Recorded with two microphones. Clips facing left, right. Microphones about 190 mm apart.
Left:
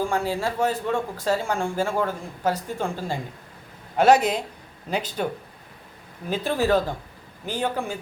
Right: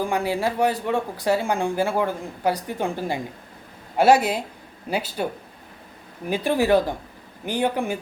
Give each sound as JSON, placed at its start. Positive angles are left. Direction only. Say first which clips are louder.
{"t": 0.0, "sound": "speech", "louder": "right 1 dB", "side_deg": -15}